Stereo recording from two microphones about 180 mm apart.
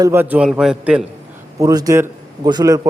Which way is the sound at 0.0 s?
10° right (ahead or behind).